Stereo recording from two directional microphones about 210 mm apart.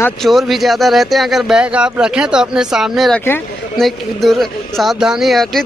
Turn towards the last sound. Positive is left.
turn(degrees=0)  # may be behind; listen again after turning